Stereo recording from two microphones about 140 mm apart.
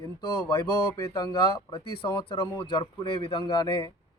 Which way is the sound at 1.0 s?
30° left (ahead or behind).